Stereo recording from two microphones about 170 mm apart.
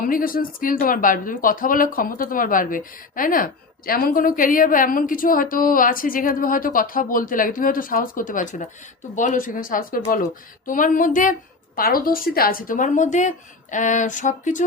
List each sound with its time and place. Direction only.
0.0 s a woman's voice: 55° left (ahead or behind)